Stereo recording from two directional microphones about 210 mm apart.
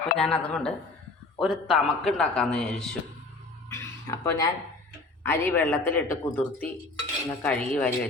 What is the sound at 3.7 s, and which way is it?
Speech, 15° left (ahead or behind).